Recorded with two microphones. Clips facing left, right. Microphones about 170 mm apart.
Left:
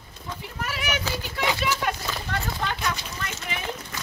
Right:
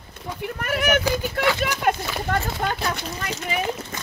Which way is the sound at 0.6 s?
55° right (ahead or behind).